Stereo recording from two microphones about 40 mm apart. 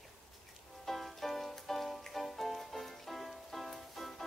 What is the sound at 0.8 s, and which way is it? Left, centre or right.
Music, centre.